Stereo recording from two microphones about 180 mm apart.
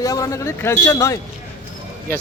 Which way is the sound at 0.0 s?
20° left (ahead or behind).